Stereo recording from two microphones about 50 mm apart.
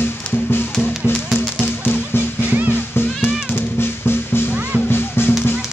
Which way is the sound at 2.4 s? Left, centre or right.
Right.